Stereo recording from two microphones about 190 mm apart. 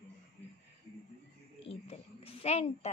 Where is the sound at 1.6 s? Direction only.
30° left (ahead or behind).